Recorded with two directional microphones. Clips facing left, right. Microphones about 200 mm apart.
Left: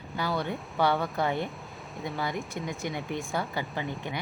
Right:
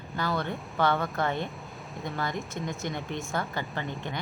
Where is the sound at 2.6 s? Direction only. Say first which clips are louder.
Even; 15° left (ahead or behind).